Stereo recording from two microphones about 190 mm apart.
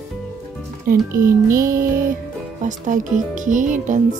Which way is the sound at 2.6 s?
40° right (ahead or behind).